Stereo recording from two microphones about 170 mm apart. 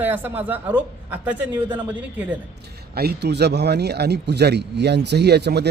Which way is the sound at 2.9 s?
65° right (ahead or behind).